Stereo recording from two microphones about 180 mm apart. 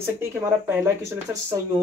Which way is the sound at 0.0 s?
10° right (ahead or behind).